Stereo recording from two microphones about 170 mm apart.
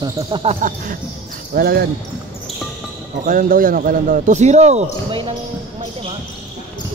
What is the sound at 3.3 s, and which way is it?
A man's voice, 55° right (ahead or behind).